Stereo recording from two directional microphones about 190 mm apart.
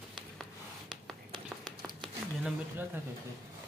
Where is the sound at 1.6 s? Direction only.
Centre (ahead or behind).